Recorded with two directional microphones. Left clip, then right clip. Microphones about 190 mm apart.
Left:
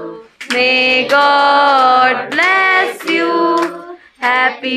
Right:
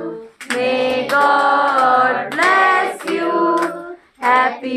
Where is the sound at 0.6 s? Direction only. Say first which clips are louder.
Left 6 dB; 20° left (ahead or behind).